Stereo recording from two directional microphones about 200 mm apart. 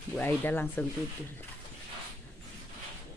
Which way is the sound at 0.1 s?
10° left (ahead or behind).